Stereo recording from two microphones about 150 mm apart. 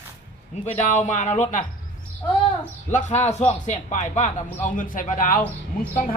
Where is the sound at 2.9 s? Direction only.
50° left (ahead or behind).